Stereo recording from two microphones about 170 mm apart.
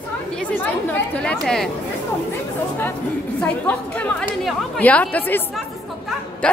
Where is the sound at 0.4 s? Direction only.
10° left (ahead or behind).